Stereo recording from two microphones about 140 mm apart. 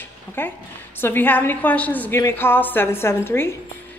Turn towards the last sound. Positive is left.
turn(degrees=15)  # may be behind; listen again after turning